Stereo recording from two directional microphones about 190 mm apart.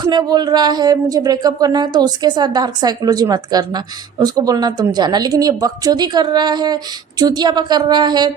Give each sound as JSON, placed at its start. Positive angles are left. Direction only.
{"t": 0.0, "sound": "speech", "side_deg": -20}